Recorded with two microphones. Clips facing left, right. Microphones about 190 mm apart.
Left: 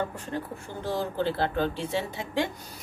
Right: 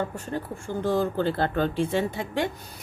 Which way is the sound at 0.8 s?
50° right (ahead or behind).